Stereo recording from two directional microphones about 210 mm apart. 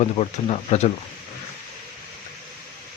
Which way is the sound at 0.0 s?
30° left (ahead or behind).